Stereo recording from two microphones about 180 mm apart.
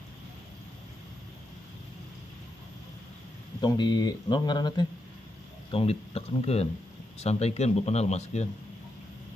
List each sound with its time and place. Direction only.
3.6 s speech: 25° left (ahead or behind)